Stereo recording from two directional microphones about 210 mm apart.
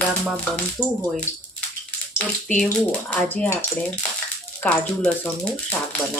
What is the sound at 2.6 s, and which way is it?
Speech, 5° left (ahead or behind).